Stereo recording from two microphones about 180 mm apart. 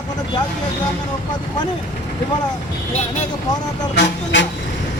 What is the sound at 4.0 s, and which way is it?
Speech, 80° left.